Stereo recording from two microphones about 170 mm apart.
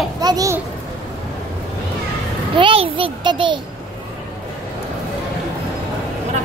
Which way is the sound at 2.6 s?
30° right (ahead or behind).